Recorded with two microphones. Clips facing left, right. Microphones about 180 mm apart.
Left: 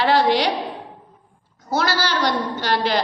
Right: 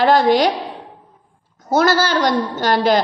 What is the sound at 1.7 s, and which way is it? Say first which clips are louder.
A woman's voice: right 6 dB; 50° right (ahead or behind).